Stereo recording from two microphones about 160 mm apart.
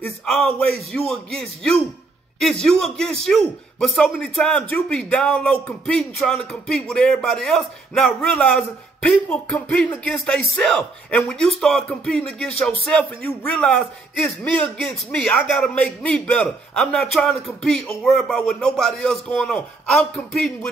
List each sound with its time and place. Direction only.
0.0 s a man's voice: 5° left (ahead or behind)